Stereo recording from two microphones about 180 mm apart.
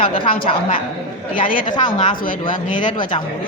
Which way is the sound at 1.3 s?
50° left (ahead or behind).